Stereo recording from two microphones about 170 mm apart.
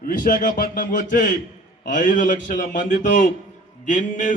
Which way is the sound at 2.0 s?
50° left (ahead or behind).